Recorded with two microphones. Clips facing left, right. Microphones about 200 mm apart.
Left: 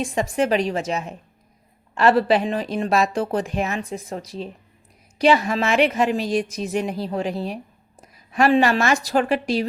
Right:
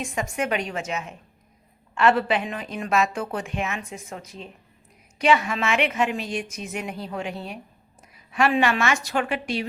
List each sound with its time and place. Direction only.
0.0 s speech: 35° left (ahead or behind)